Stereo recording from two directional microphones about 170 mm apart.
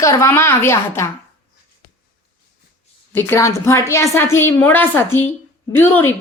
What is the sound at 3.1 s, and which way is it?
A woman's voice, 15° left (ahead or behind).